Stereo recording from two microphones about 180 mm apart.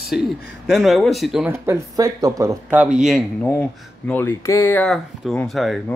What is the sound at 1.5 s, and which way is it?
Speech, 15° right (ahead or behind).